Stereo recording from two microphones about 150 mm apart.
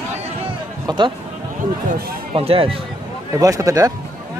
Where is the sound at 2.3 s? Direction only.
40° right (ahead or behind).